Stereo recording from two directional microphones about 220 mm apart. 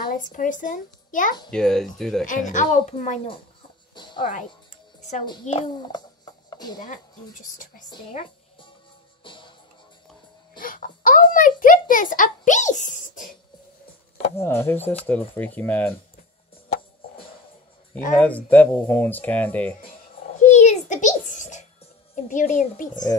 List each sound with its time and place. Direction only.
0.3 s a woman's voice: 35° left (ahead or behind)
1.5 s speech: centre (ahead or behind)
2.2 s a woman's voice: 35° left (ahead or behind)
3.9 s music: 20° left (ahead or behind)
4.2 s a woman's voice: 35° left (ahead or behind)
5.2 s a child's voice: 20° left (ahead or behind)
7.9 s speech: 25° left (ahead or behind)
9.2 s music: 20° left (ahead or behind)
10.6 s a sound: 40° left (ahead or behind)
14.3 s speech: 10° left (ahead or behind)
18.1 s speech: 5° left (ahead or behind)
20.3 s a sound: 30° left (ahead or behind)
22.1 s a woman's voice: 35° left (ahead or behind)